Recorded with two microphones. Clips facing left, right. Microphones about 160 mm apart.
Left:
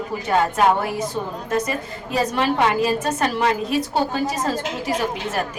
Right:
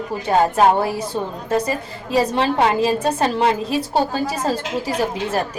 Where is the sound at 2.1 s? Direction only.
30° right (ahead or behind).